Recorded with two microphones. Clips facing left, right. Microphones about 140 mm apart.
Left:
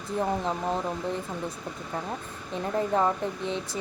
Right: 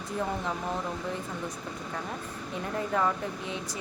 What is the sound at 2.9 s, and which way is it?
Speech, 30° left (ahead or behind).